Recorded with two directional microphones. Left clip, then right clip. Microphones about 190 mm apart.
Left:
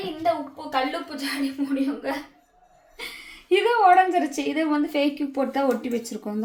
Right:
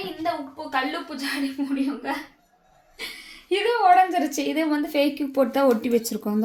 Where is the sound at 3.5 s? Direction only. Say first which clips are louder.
Left 1 dB; 25° right (ahead or behind); by 6.3 s 40° right (ahead or behind).